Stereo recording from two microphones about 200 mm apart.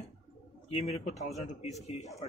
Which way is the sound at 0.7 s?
30° left (ahead or behind).